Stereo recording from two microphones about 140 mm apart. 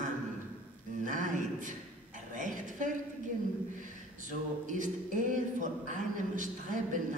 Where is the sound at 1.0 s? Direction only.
65° right (ahead or behind).